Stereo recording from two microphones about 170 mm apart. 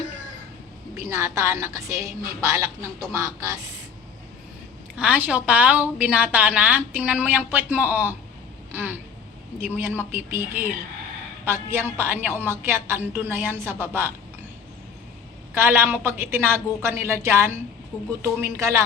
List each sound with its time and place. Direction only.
0.9 s a woman's voice: 15° right (ahead or behind)
4.9 s a woman's voice: 10° right (ahead or behind)
15.5 s a woman's voice: 15° right (ahead or behind)
17.9 s speech: 5° left (ahead or behind)
18.3 s a woman's voice: 15° right (ahead or behind)